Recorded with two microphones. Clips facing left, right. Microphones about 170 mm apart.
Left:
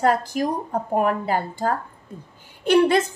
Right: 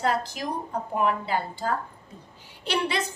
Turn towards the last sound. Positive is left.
turn(degrees=50)  # may be behind; listen again after turning